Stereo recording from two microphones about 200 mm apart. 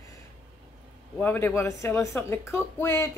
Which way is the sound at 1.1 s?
10° left (ahead or behind).